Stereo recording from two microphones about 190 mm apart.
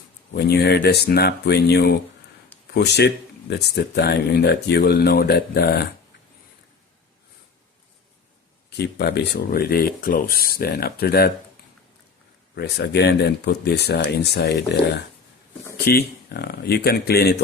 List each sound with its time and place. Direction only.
0.3 s speech: 55° left (ahead or behind)
8.8 s speech: 60° left (ahead or behind)
12.5 s speech: 60° left (ahead or behind)